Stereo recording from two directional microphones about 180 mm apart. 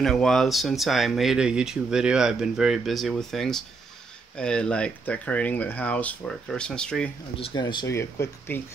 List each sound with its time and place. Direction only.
0.0 s speech: 5° left (ahead or behind)
7.3 s speech: 25° left (ahead or behind)
7.9 s speech: 15° left (ahead or behind)